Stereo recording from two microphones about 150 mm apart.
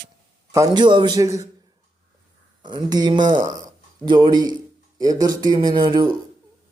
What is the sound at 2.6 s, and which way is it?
Speech, 30° right (ahead or behind).